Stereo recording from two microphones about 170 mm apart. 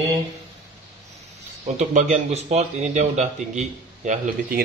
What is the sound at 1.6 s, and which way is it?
Speech, 45° right (ahead or behind).